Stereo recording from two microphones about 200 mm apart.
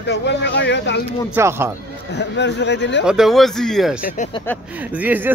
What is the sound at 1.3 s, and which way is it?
Speech, 10° right (ahead or behind).